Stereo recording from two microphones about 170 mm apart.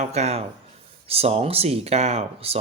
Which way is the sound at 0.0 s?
40° right (ahead or behind).